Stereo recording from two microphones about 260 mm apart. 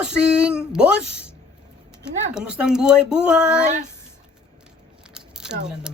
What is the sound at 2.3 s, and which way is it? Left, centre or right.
Speech, centre.